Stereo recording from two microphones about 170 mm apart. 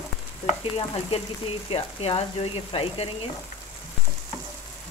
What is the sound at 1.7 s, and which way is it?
A woman's voice, 35° left (ahead or behind).